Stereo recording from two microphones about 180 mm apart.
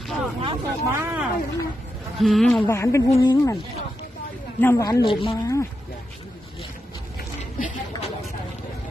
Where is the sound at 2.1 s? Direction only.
Centre (ahead or behind); by 3.5 s 25° left (ahead or behind).